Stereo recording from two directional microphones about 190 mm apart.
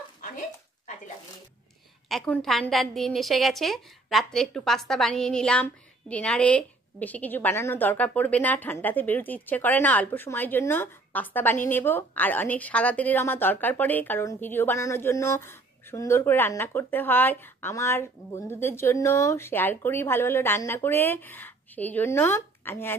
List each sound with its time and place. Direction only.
2.0 s a woman's voice: 5° left (ahead or behind)